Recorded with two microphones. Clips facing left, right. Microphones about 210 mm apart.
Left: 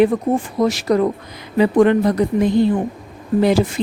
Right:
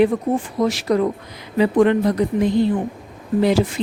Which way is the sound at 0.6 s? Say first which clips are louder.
Left 2 dB; 40° left (ahead or behind).